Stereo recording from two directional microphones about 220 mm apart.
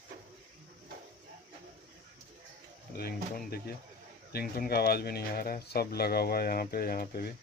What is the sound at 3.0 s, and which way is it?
Speech, 45° left (ahead or behind).